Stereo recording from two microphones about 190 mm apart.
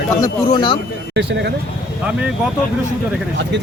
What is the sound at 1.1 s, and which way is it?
Speech, 65° right (ahead or behind).